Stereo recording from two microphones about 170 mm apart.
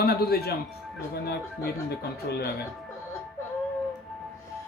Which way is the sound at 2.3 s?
70° left (ahead or behind).